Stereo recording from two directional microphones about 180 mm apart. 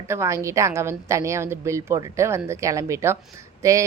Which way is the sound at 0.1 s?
15° right (ahead or behind).